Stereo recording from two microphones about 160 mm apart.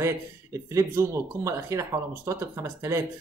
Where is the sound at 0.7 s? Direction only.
20° right (ahead or behind).